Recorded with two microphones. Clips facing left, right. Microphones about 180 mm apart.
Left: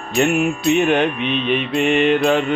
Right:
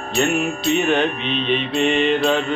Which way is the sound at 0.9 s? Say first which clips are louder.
Left 2 dB; 10° left (ahead or behind).